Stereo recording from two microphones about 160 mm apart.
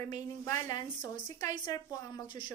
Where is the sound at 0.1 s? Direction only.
20° left (ahead or behind).